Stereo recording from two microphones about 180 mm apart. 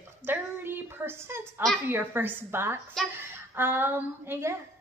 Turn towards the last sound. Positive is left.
turn(degrees=-15)  # may be behind; listen again after turning